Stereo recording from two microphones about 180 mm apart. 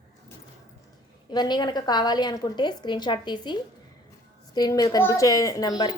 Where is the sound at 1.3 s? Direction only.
25° left (ahead or behind).